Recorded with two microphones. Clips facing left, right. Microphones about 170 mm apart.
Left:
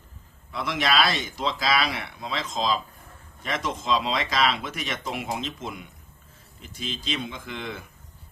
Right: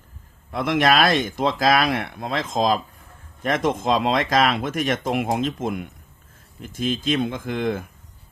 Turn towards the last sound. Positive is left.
turn(degrees=-50)  # may be behind; listen again after turning